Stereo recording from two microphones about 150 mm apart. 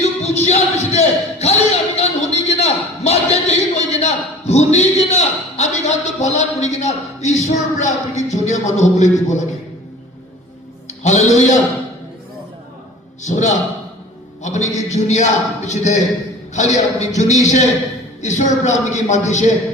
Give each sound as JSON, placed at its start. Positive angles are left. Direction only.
{"t": 0.2, "sound": "a sound", "side_deg": 45}
{"t": 2.5, "sound": "a man's voice", "side_deg": 45}
{"t": 10.8, "sound": "a man's voice", "side_deg": 50}
{"t": 13.2, "sound": "a man's voice", "side_deg": 55}